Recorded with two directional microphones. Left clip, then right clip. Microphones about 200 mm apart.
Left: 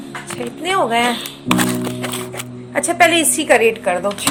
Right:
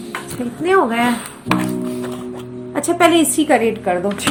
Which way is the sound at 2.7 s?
40° left (ahead or behind).